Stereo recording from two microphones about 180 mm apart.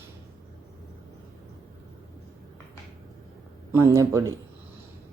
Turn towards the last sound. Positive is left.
turn(degrees=-20)  # may be behind; listen again after turning